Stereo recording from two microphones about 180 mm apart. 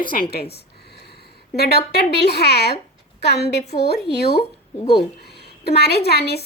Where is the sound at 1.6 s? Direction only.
65° left (ahead or behind).